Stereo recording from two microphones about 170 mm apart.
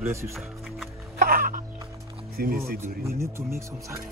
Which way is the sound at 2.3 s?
60° right (ahead or behind).